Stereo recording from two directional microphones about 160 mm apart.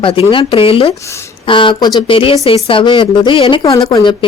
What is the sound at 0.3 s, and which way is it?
Speech, 35° left (ahead or behind).